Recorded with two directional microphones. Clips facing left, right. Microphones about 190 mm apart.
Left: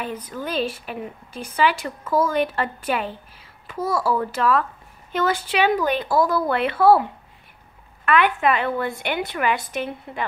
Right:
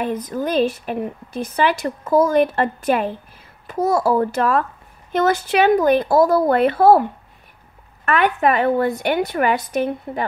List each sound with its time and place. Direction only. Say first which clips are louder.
0.0 s a woman's voice: right 7 dB; 45° right (ahead or behind)